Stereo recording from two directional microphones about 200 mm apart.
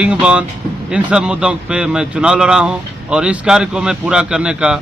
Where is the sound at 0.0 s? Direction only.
5° right (ahead or behind).